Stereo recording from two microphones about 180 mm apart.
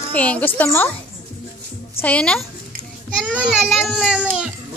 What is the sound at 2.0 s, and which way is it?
Speech, 5° left (ahead or behind).